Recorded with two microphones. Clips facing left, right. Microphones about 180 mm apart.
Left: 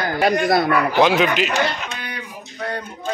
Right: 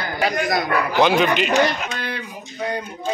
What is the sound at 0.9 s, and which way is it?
Speech, centre (ahead or behind).